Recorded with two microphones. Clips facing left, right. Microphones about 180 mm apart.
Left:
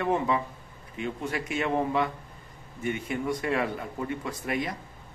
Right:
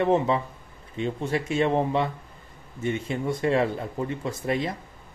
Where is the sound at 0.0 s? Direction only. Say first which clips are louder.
Right 4 dB; 25° right (ahead or behind).